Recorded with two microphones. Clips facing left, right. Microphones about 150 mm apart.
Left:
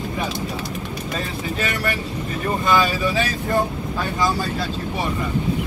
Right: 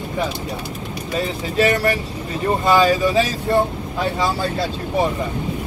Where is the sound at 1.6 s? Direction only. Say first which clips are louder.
Right 9 dB; 35° right (ahead or behind).